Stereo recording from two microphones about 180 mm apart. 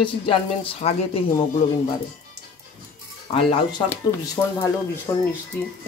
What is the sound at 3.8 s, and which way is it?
Speech, 15° left (ahead or behind).